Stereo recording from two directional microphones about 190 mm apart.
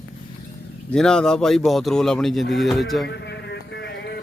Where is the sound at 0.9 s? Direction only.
5° left (ahead or behind).